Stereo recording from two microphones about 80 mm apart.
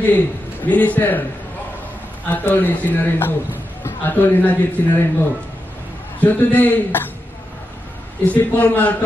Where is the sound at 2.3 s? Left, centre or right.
Left.